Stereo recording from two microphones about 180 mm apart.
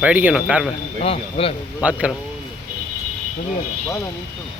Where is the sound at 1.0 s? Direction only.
30° left (ahead or behind).